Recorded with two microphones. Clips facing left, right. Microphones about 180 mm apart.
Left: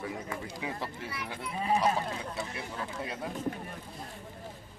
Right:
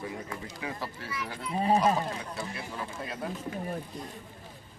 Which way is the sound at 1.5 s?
35° right (ahead or behind).